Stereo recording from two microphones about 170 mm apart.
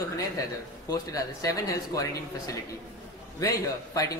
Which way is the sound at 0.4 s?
20° left (ahead or behind).